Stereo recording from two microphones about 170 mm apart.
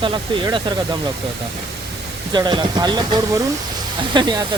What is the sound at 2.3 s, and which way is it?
Speech, 25° right (ahead or behind).